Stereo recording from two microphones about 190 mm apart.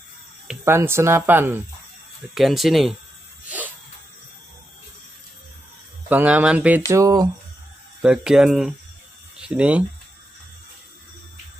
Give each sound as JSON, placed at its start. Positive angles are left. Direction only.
{"t": 0.5, "sound": "speech", "side_deg": -10}
{"t": 3.4, "sound": "a sound", "side_deg": -10}
{"t": 6.0, "sound": "speech", "side_deg": -10}
{"t": 6.9, "sound": "speech", "side_deg": -20}
{"t": 8.0, "sound": "speech", "side_deg": -5}